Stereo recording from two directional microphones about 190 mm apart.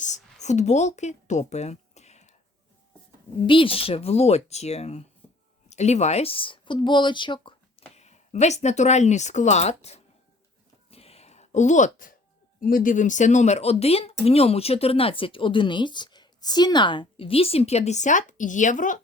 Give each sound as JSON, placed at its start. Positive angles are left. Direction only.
{"t": 0.4, "sound": "speech", "side_deg": 35}
{"t": 3.4, "sound": "speech", "side_deg": 25}
{"t": 10.9, "sound": "a sound", "side_deg": 30}
{"t": 12.5, "sound": "speech", "side_deg": 45}